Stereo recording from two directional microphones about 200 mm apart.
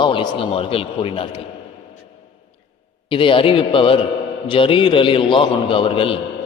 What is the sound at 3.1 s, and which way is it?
A man's voice, 25° left (ahead or behind).